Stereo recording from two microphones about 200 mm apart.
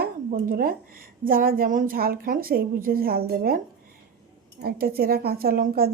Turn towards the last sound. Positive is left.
turn(degrees=-50)  # may be behind; listen again after turning